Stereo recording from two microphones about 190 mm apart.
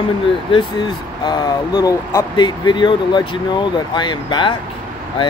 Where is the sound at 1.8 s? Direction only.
20° left (ahead or behind).